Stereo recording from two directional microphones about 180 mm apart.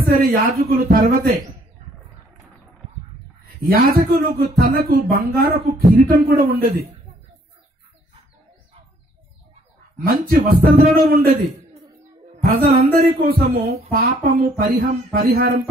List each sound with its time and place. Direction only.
0.6 s speech: 50° right (ahead or behind)
3.4 s speech: 55° right (ahead or behind)
9.9 s speech: 55° right (ahead or behind)
12.4 s speech: 55° right (ahead or behind)